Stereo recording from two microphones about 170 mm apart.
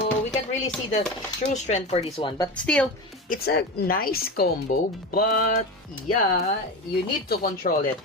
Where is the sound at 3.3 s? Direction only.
65° left (ahead or behind).